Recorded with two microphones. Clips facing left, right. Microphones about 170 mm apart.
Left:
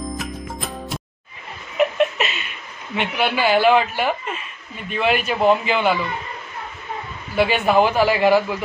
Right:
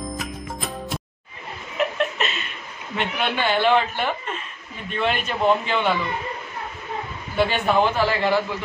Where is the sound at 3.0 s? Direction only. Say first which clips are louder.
Left 3 dB; 5° left (ahead or behind).